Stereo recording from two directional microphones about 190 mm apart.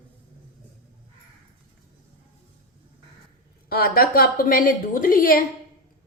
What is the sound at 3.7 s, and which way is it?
A woman's voice, 55° left (ahead or behind).